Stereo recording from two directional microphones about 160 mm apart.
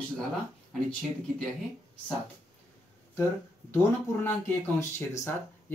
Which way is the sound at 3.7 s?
15° left (ahead or behind).